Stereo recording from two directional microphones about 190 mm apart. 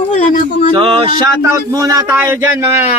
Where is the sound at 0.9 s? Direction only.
30° right (ahead or behind).